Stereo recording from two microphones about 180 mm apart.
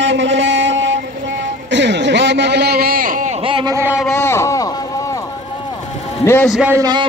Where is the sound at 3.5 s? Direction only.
30° right (ahead or behind).